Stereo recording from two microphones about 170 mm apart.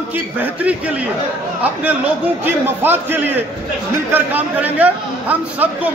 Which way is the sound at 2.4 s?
10° right (ahead or behind).